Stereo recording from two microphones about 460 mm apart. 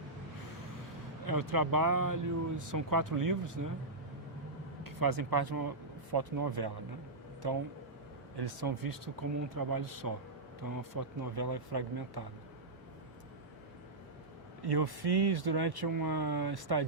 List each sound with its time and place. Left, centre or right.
1.3 s speech: right
4.8 s speech: right
8.4 s speech: right
14.6 s speech: right